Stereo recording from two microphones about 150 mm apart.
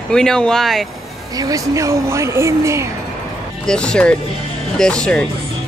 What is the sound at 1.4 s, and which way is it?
Speech, 20° right (ahead or behind).